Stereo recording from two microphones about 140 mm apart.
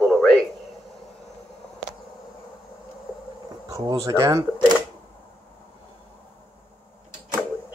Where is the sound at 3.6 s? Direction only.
25° right (ahead or behind).